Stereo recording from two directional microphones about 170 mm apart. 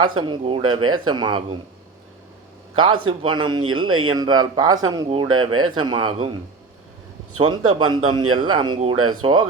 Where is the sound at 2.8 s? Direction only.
30° right (ahead or behind).